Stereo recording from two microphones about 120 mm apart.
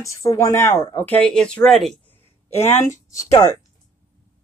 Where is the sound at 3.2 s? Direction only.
30° left (ahead or behind).